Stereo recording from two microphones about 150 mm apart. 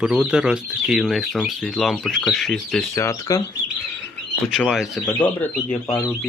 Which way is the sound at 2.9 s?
20° left (ahead or behind).